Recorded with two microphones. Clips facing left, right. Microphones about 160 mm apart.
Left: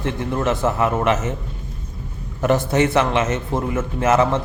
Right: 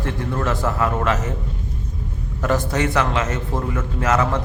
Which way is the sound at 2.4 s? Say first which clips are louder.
Left 4 dB; 20° left (ahead or behind).